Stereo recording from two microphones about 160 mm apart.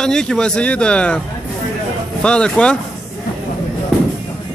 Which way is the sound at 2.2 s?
5° left (ahead or behind).